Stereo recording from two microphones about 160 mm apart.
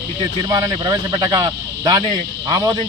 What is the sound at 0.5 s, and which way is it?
Speech, 20° right (ahead or behind).